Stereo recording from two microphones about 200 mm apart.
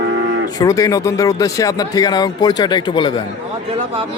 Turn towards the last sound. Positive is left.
turn(degrees=25)  # may be behind; listen again after turning